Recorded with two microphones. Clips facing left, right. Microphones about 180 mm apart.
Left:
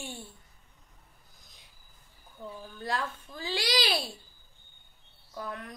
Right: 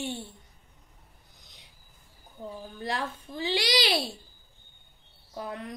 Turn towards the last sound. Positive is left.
turn(degrees=-20)  # may be behind; listen again after turning